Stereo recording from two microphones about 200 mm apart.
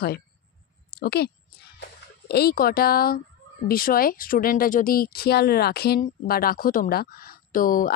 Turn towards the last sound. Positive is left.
turn(degrees=45)  # may be behind; listen again after turning